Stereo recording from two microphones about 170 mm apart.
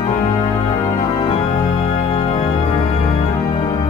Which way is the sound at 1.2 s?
30° left (ahead or behind).